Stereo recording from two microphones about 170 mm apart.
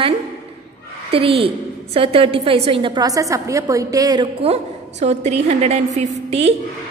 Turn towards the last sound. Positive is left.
turn(degrees=-40)  # may be behind; listen again after turning